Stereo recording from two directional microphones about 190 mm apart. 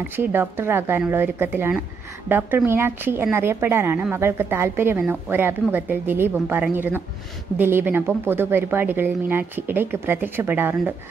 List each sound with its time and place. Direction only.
0.1 s a woman's voice: 10° right (ahead or behind)